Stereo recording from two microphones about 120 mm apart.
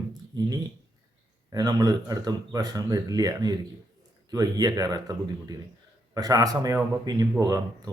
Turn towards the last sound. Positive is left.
turn(degrees=-35)  # may be behind; listen again after turning